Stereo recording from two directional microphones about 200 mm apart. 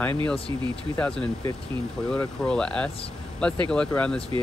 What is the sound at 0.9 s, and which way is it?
Speech, 5° left (ahead or behind).